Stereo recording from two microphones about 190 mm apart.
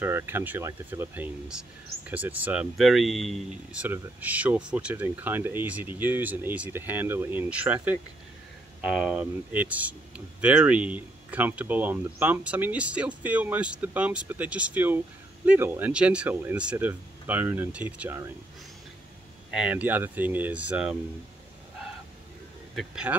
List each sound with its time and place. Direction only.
0.0 s speech: 10° right (ahead or behind)
19.5 s speech: 5° right (ahead or behind)
22.8 s speech: 5° right (ahead or behind)